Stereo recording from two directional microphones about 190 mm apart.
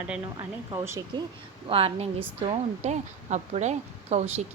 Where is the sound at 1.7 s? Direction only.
30° right (ahead or behind).